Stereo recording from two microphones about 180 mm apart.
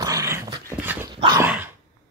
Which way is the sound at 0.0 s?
20° right (ahead or behind).